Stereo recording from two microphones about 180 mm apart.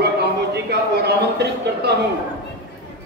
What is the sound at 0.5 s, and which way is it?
A man's voice, 65° right (ahead or behind).